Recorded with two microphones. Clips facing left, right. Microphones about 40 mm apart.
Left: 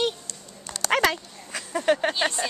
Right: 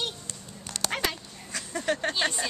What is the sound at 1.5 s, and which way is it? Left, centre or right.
Speech, left.